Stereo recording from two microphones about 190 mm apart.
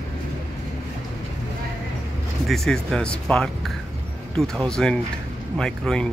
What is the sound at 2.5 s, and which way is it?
Speech, centre (ahead or behind).